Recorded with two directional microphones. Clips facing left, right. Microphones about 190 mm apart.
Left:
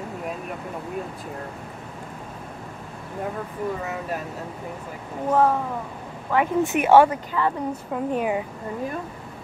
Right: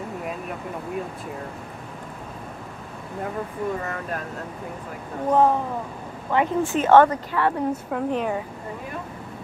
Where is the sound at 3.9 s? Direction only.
5° left (ahead or behind).